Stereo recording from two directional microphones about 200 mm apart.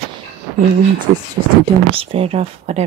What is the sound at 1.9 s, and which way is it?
Speech, 30° right (ahead or behind).